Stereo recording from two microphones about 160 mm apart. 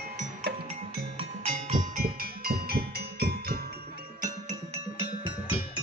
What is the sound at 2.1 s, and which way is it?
Music, 70° right (ahead or behind).